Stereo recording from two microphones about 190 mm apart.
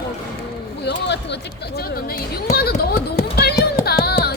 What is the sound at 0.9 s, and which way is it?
Speech, 65° left (ahead or behind).